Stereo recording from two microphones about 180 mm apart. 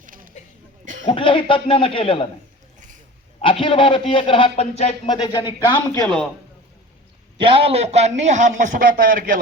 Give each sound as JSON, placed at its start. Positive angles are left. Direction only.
{"t": 0.0, "sound": "a sound", "side_deg": -50}
{"t": 1.0, "sound": "a man's voice", "side_deg": 30}
{"t": 3.4, "sound": "a man's voice", "side_deg": 30}
{"t": 5.0, "sound": "a man's voice", "side_deg": 25}
{"t": 7.3, "sound": "a man's voice", "side_deg": -30}